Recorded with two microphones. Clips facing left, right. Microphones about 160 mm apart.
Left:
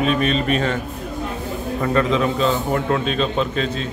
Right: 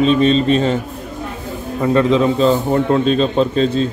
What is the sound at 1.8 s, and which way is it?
A man's voice, 30° right (ahead or behind).